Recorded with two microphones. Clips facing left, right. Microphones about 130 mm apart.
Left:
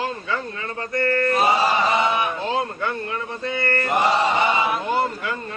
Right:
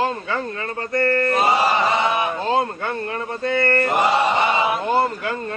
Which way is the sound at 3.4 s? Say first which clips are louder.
Right 6 dB; 50° right (ahead or behind).